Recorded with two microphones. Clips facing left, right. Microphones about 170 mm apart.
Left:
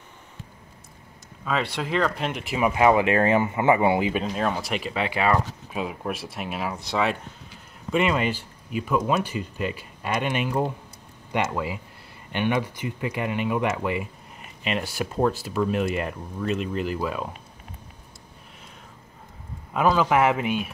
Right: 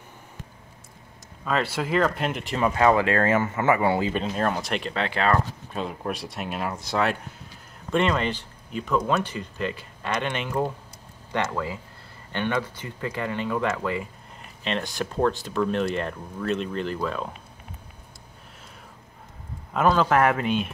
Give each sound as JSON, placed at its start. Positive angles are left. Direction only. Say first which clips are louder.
{"t": 1.4, "sound": "speech", "louder": "right 1 dB", "side_deg": 0}
{"t": 4.2, "sound": "speech", "louder": "even", "side_deg": 0}
{"t": 19.7, "sound": "speech", "louder": "even", "side_deg": 5}
{"t": 20.1, "sound": "speech", "louder": "even", "side_deg": 15}